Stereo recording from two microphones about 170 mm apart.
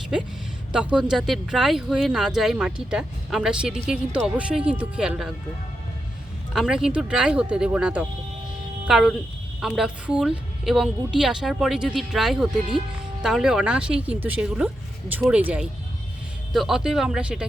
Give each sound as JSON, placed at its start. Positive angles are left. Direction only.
{"t": 0.1, "sound": "a woman's voice", "side_deg": -5}
{"t": 6.5, "sound": "a woman's voice", "side_deg": -5}